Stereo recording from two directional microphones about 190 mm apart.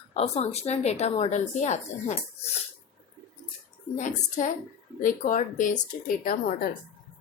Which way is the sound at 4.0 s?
40° left (ahead or behind).